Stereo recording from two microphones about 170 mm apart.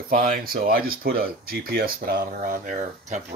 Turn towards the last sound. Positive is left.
turn(degrees=-50)  # may be behind; listen again after turning